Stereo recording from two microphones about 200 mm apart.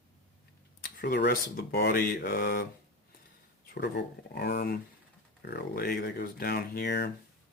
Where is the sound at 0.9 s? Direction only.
50° left (ahead or behind).